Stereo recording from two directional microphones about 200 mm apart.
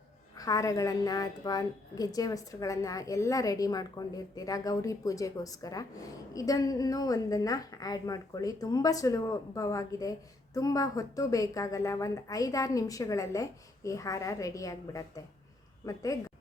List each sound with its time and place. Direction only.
0.3 s a woman's voice: 20° left (ahead or behind)